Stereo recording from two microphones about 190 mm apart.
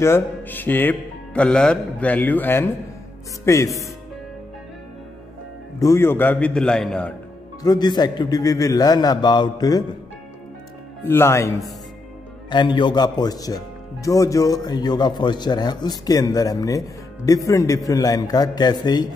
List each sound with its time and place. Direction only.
0.0 s speech: 10° left (ahead or behind)
5.8 s speech: 15° left (ahead or behind)
7.6 s a man's voice: 20° left (ahead or behind)
11.1 s a man's voice: 15° left (ahead or behind)